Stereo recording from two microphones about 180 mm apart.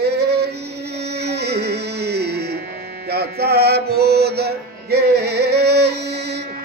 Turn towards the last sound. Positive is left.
turn(degrees=-65)  # may be behind; listen again after turning